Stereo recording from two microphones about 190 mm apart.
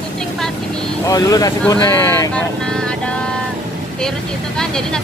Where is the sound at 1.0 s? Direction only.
20° left (ahead or behind).